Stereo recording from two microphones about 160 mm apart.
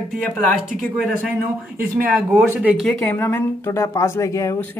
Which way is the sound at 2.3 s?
5° right (ahead or behind).